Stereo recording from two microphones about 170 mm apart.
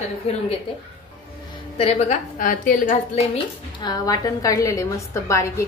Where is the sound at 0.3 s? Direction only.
35° left (ahead or behind).